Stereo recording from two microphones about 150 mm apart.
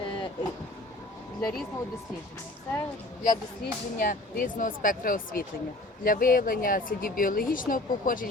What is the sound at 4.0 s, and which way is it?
Speech, 70° left (ahead or behind).